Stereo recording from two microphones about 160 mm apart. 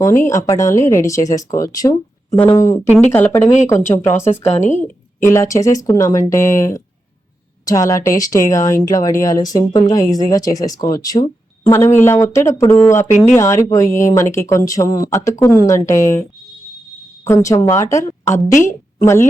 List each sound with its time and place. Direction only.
0.0 s speech: 15° left (ahead or behind)
3.4 s a woman's voice: 45° left (ahead or behind)
3.8 s speech: 15° left (ahead or behind)
4.4 s a woman's voice: 45° left (ahead or behind)
4.8 s speech: 15° left (ahead or behind)
17.2 s speech: 20° left (ahead or behind)